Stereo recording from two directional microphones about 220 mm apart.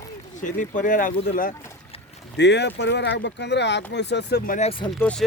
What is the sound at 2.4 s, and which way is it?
Speech, 50° left (ahead or behind).